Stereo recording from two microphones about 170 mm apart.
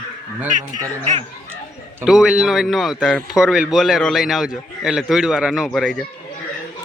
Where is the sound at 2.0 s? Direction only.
5° right (ahead or behind).